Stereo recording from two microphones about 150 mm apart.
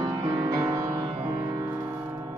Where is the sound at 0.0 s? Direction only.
25° right (ahead or behind).